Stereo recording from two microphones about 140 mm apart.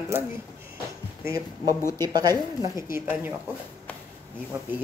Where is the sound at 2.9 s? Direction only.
15° right (ahead or behind).